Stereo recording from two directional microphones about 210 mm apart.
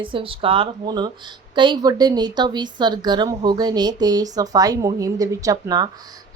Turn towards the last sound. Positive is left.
turn(degrees=-20)  # may be behind; listen again after turning